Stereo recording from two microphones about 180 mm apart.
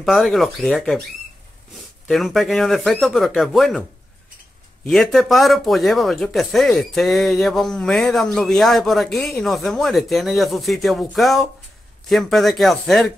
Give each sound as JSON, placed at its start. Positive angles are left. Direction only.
{"t": 0.0, "sound": "speech", "side_deg": 0}
{"t": 4.8, "sound": "speech", "side_deg": 0}